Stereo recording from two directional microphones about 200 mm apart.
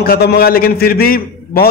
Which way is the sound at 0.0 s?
50° left (ahead or behind).